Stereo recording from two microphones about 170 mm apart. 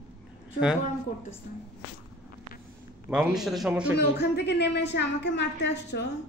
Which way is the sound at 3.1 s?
5° right (ahead or behind).